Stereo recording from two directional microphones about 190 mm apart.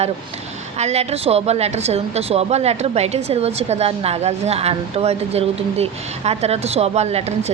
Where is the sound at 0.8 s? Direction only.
35° right (ahead or behind).